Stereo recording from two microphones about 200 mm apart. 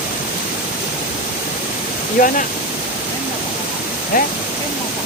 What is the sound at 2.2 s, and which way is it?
Speech, 45° left (ahead or behind).